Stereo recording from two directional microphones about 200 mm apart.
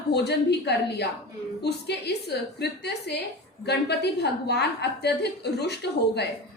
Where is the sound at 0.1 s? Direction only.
55° left (ahead or behind).